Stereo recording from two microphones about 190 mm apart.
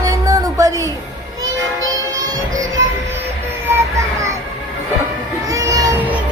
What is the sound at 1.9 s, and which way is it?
Music, 20° right (ahead or behind).